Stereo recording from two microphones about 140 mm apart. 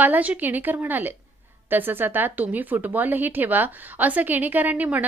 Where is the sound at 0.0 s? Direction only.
10° right (ahead or behind).